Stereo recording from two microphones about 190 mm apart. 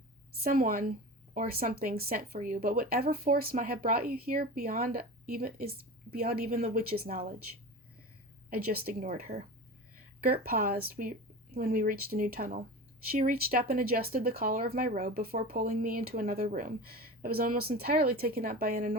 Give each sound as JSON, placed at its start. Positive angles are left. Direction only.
{"t": 0.4, "sound": "speech", "side_deg": -50}
{"t": 8.4, "sound": "speech", "side_deg": -50}